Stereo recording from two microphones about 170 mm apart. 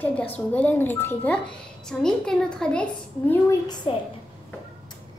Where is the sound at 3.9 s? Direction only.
30° left (ahead or behind).